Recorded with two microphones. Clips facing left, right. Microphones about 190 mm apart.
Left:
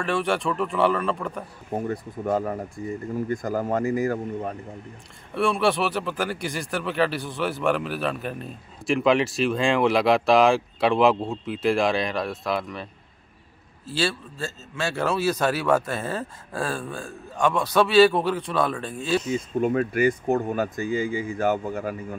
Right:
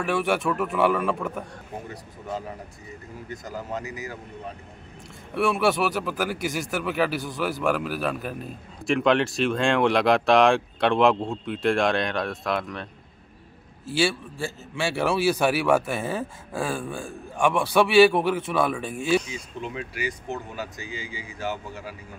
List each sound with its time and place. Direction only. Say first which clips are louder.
0.0 s a man's voice: even; 5° right (ahead or behind)
1.7 s speech: left 9 dB; 50° left (ahead or behind)
5.3 s speech: even; 5° right (ahead or behind)
13.9 s a man's voice: right 2 dB; 10° right (ahead or behind)
19.3 s speech: left 11 dB; 50° left (ahead or behind)